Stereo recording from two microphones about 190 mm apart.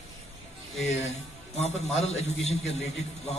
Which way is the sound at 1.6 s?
35° left (ahead or behind).